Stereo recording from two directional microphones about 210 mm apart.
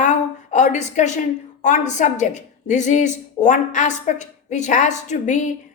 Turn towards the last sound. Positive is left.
turn(degrees=35)  # may be behind; listen again after turning